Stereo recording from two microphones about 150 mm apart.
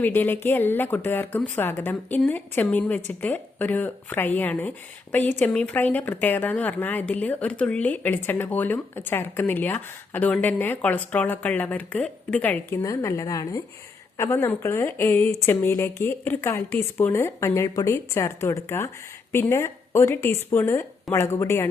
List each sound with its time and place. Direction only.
0.0 s speech: 15° left (ahead or behind)